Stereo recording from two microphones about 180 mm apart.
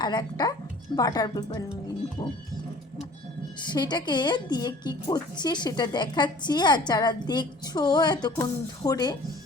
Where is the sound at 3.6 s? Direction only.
25° left (ahead or behind).